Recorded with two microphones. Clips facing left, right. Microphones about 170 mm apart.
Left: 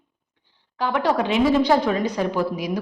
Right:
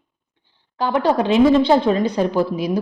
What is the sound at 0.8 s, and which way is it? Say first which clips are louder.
A woman's voice: right 3 dB; 30° right (ahead or behind).